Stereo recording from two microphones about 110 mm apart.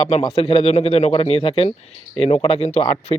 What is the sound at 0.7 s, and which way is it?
Speech, 70° left (ahead or behind).